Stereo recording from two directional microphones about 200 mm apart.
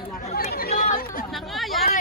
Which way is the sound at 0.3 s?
50° left (ahead or behind).